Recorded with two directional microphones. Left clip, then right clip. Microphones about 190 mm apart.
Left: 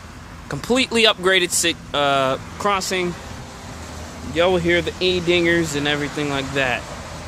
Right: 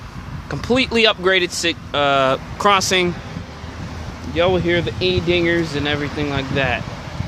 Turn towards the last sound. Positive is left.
turn(degrees=0)  # may be behind; listen again after turning